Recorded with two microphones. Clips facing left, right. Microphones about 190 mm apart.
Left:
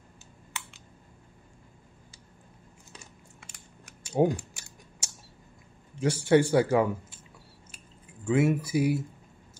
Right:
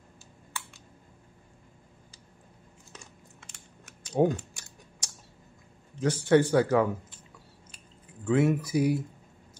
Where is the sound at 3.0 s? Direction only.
10° left (ahead or behind).